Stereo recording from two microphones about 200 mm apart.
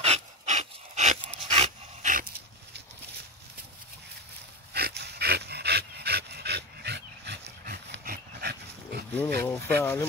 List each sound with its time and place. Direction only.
0.0 s dog: 35° right (ahead or behind)
4.7 s dog: 55° right (ahead or behind)
9.4 s speech: 10° left (ahead or behind)